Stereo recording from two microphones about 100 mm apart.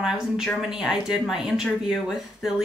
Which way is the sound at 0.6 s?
5° right (ahead or behind).